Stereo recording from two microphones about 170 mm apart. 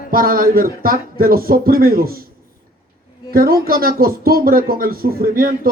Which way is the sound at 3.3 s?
60° right (ahead or behind).